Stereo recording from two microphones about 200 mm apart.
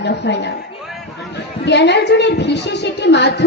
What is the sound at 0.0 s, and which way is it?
Speech, 55° left (ahead or behind).